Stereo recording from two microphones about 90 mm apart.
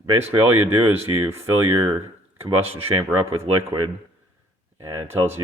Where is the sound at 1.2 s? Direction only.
35° right (ahead or behind).